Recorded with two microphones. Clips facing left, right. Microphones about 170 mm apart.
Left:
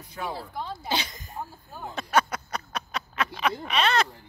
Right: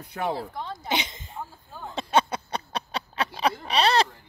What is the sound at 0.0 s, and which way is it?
Speech, 65° right (ahead or behind).